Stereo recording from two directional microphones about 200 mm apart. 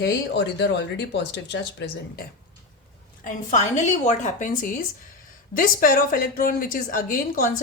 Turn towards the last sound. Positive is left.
turn(degrees=45)  # may be behind; listen again after turning